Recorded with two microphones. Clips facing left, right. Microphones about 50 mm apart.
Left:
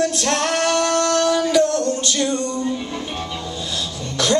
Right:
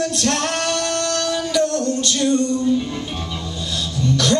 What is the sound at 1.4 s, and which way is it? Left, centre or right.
Music, centre.